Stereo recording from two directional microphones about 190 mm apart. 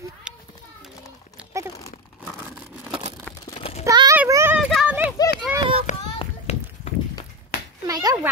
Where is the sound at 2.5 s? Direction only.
Centre (ahead or behind).